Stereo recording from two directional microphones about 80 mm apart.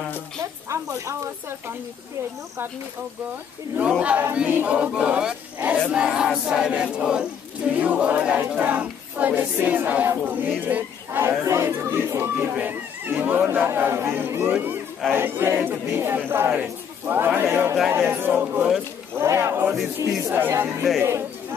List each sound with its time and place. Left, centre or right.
0.4 s a woman's voice: right
4.0 s battle cry: centre
7.7 s speech: centre
19.1 s a woman's voice: right
20.0 s a woman's voice: right
20.3 s speech: right